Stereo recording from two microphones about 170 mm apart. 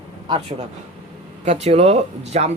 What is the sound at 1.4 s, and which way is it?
Speech, 40° right (ahead or behind).